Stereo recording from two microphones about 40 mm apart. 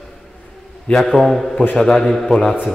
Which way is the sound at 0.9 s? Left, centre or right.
Centre.